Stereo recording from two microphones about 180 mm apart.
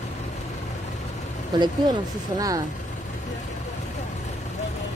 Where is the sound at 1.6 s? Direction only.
20° right (ahead or behind).